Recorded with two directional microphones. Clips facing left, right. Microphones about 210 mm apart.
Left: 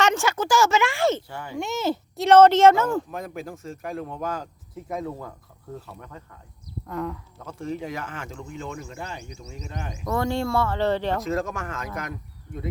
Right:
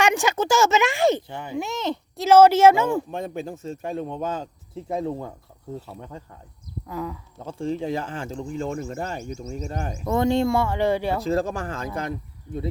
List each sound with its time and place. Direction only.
0.0 s speech: 15° right (ahead or behind)
1.5 s speech: centre (ahead or behind)
3.1 s speech: 25° right (ahead or behind)
6.8 s speech: centre (ahead or behind)
7.3 s speech: 30° right (ahead or behind)
8.5 s speech: 45° right (ahead or behind)
10.1 s speech: 20° right (ahead or behind)
11.2 s speech: 30° right (ahead or behind)